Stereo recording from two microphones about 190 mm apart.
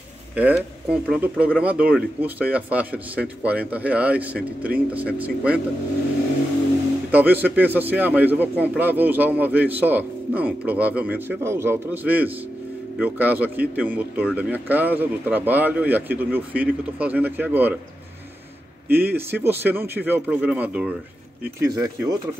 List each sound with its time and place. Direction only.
0.4 s a man's voice: 5° right (ahead or behind)
7.1 s a man's voice: 10° right (ahead or behind)
18.9 s a man's voice: 10° right (ahead or behind)
21.5 s a man's voice: 20° right (ahead or behind)